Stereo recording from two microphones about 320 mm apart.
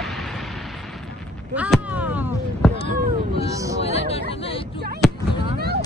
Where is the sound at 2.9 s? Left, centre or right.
Right.